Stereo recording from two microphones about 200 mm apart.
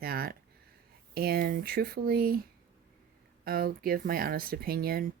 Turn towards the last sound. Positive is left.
turn(degrees=-45)  # may be behind; listen again after turning